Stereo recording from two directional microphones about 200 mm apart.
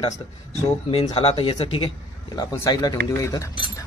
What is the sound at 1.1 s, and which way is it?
Speech, 30° left (ahead or behind).